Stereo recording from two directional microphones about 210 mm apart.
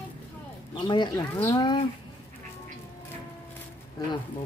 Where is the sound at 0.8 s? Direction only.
20° left (ahead or behind).